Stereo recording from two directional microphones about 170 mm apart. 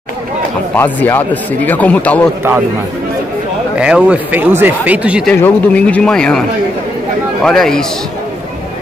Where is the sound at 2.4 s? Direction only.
15° right (ahead or behind).